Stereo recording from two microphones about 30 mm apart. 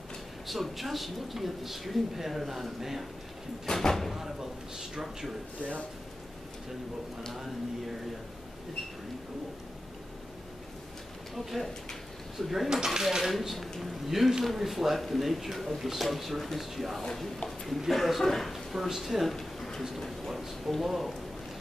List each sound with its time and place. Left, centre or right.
0.5 s speech: centre
3.6 s speech: left
4.1 s speech: centre
11.3 s speech: centre
12.6 s speech: centre
13.3 s speech: centre
18.2 s a man's voice: centre
18.5 s speech: centre
19.3 s a sound: centre
20.8 s speech: centre